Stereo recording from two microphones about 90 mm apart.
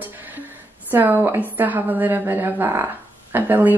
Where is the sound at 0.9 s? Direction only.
20° right (ahead or behind).